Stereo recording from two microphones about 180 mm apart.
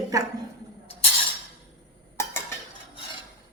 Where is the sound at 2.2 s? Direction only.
15° left (ahead or behind).